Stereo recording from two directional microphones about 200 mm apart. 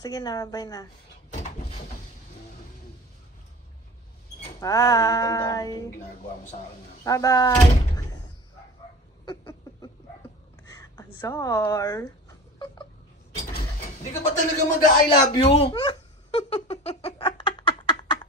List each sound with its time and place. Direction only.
0.0 s a woman's voice: 20° left (ahead or behind)
4.6 s speech: 15° left (ahead or behind)
7.1 s speech: 15° left (ahead or behind)
9.2 s a sound: 20° left (ahead or behind)
10.7 s speech: 15° left (ahead or behind)
14.4 s speech: 45° left (ahead or behind)
15.3 s a woman's voice: 30° left (ahead or behind)
15.7 s a sound: 25° left (ahead or behind)